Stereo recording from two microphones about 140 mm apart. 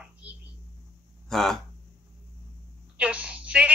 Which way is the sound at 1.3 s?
5° left (ahead or behind).